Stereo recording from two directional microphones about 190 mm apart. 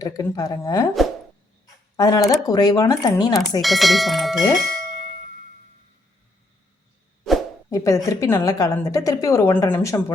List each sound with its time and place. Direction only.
0.0 s a woman's voice: 20° left (ahead or behind)
2.0 s speech: 20° left (ahead or behind)
3.6 s speech: centre (ahead or behind)
7.7 s a woman's voice: 15° left (ahead or behind)